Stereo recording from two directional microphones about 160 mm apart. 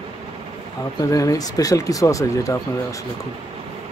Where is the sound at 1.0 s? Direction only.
20° left (ahead or behind).